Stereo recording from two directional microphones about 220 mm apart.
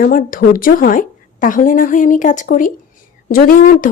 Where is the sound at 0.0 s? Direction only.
40° left (ahead or behind).